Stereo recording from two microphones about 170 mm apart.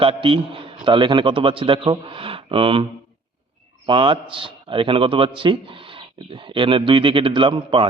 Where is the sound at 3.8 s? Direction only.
30° right (ahead or behind).